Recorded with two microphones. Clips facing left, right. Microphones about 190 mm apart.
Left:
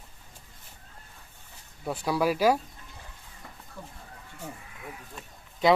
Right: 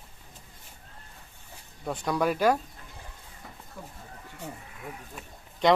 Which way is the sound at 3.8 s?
10° right (ahead or behind).